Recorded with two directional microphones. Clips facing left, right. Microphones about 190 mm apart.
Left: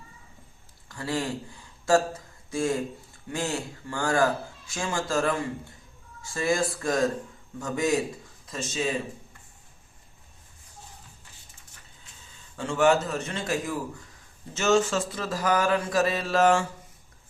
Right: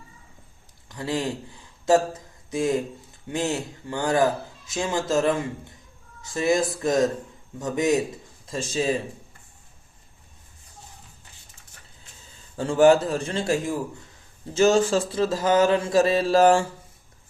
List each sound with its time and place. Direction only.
0.9 s a man's voice: 20° right (ahead or behind)
2.5 s a man's voice: 20° right (ahead or behind)
8.4 s speech: 30° right (ahead or behind)
12.5 s speech: 35° right (ahead or behind)